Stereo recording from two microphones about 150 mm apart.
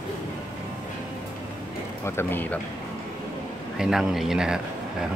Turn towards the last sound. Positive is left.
turn(degrees=-5)  # may be behind; listen again after turning